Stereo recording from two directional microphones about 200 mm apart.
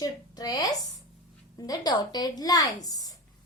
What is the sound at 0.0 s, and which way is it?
A woman's voice, 20° left (ahead or behind).